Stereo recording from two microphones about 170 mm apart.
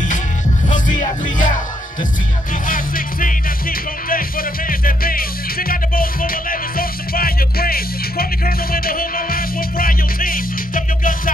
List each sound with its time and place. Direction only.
0.7 s music: 50° left (ahead or behind)
2.7 s music: 55° left (ahead or behind)